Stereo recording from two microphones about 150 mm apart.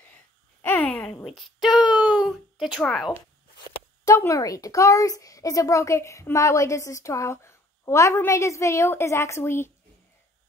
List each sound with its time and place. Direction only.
0.6 s a sound: 15° left (ahead or behind)
2.8 s speech: centre (ahead or behind)
4.0 s a child's voice: 20° left (ahead or behind)